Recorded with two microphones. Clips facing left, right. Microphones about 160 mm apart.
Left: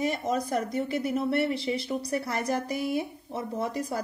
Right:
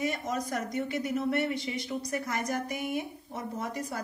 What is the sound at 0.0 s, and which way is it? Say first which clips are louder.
Speech: left 4 dB; 30° left (ahead or behind).